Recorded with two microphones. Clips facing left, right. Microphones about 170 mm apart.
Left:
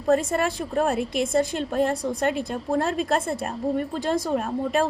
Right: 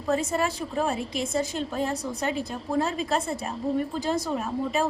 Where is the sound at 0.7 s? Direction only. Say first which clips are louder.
Left 4 dB; 60° left (ahead or behind).